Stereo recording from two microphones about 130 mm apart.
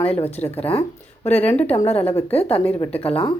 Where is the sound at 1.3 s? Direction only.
50° left (ahead or behind).